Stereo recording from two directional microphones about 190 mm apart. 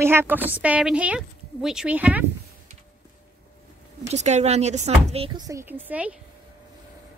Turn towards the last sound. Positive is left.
turn(degrees=-10)  # may be behind; listen again after turning